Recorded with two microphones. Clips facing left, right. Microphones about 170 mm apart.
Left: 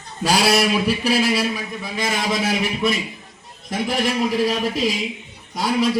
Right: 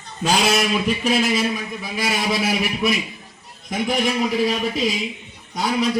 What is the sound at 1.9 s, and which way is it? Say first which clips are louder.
Speech: even; 5° right (ahead or behind).